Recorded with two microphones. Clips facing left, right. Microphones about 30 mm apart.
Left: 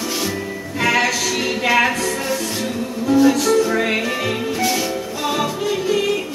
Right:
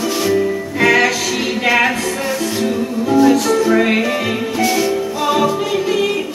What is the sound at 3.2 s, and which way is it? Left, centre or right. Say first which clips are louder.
Music: right 3 dB; centre.